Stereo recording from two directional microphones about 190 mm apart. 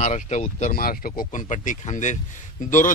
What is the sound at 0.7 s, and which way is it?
A man's voice, 50° left (ahead or behind).